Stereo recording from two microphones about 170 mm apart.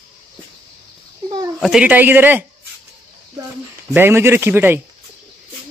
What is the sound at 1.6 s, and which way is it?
Speech, 5° right (ahead or behind).